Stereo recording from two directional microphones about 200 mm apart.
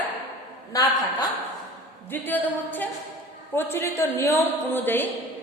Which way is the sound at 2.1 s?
10° left (ahead or behind).